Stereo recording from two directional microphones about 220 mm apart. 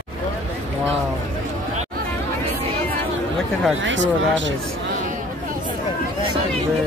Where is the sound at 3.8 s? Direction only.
55° right (ahead or behind).